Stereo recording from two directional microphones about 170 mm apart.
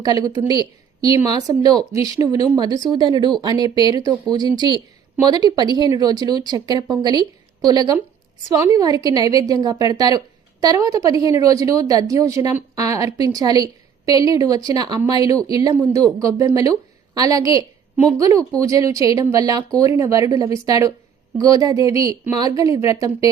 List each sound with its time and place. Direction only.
0.0 s a woman's voice: 20° right (ahead or behind)